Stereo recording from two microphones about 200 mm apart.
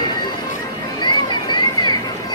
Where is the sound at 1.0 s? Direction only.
20° left (ahead or behind).